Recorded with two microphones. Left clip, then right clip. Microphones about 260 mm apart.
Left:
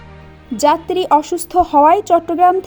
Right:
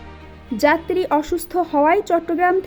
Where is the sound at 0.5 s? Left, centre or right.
Left.